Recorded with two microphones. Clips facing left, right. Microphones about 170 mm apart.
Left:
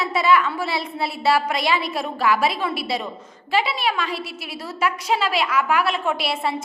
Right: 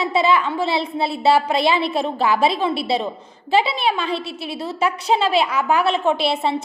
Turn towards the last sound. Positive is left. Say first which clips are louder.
# right 5 dB
turn(degrees=-25)  # may be behind; listen again after turning